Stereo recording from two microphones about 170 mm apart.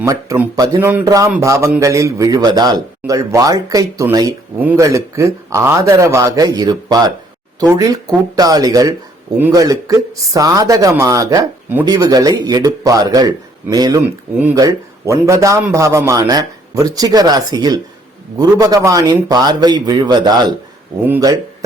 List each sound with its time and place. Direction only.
0.0 s speech: 20° right (ahead or behind)
21.0 s speech: 10° right (ahead or behind)